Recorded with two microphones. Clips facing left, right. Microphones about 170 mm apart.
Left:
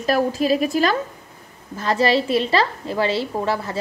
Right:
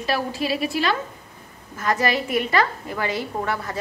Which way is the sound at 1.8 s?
30° left (ahead or behind).